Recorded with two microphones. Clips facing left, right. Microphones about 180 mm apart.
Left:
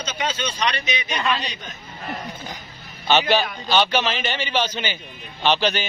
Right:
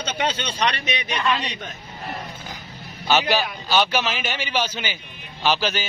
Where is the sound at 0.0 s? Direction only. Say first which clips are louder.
Right 1 dB; 60° right (ahead or behind).